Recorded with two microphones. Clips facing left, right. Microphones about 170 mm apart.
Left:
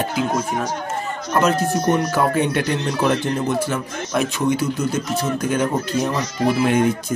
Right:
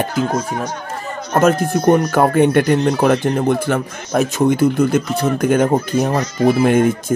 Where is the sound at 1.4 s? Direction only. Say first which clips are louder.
Right 5 dB; 50° right (ahead or behind).